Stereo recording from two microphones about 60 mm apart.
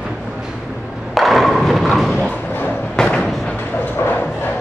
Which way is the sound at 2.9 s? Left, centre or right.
Centre.